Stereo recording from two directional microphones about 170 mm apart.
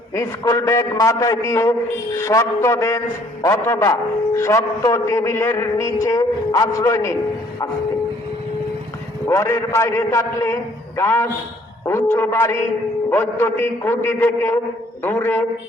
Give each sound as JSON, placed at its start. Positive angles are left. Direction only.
{"t": 0.1, "sound": "speech", "side_deg": 20}
{"t": 9.2, "sound": "speech", "side_deg": 15}